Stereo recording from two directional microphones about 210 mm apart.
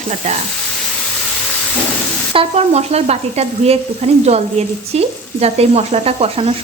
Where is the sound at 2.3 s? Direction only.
30° right (ahead or behind).